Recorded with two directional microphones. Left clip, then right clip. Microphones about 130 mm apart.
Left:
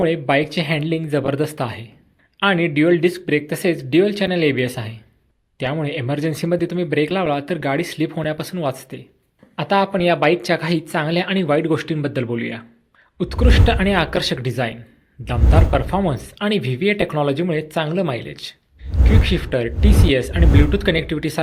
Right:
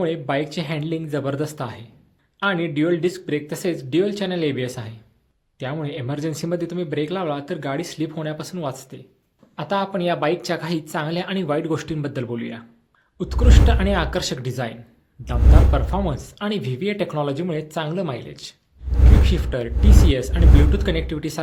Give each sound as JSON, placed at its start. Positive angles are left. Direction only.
{"t": 0.0, "sound": "speech", "side_deg": 30}